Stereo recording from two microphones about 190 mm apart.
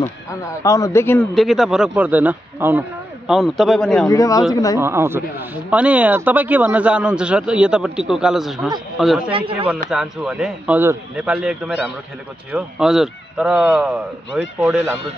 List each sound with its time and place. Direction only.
0.6 s speech: 20° left (ahead or behind); by 4.1 s centre (ahead or behind)
4.1 s speech: 20° left (ahead or behind)
4.7 s speech: 15° right (ahead or behind)
9.3 s speech: 30° right (ahead or behind)
9.8 s speech: 5° right (ahead or behind)